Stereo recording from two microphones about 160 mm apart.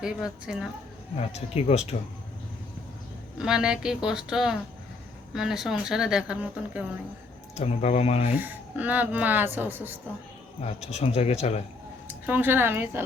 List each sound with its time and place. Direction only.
0.0 s a woman's voice: 5° right (ahead or behind)
1.1 s speech: 40° left (ahead or behind)
3.3 s a woman's voice: 5° right (ahead or behind)
7.5 s speech: 45° left (ahead or behind)
8.4 s speech: 10° right (ahead or behind)
10.6 s speech: 40° left (ahead or behind)
12.0 s speech: 10° right (ahead or behind)